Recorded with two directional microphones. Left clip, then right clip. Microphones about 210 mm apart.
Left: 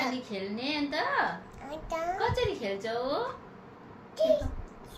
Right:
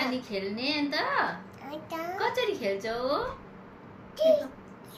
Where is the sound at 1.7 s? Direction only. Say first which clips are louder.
Left 3 dB; 15° left (ahead or behind).